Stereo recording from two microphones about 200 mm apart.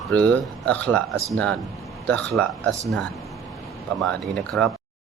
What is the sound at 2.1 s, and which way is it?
Speech, 5° left (ahead or behind).